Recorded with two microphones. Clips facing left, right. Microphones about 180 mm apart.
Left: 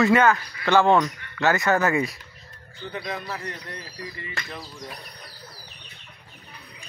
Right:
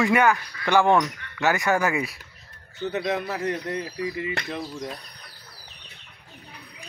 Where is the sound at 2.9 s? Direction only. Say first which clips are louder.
Right 6 dB; 75° right (ahead or behind).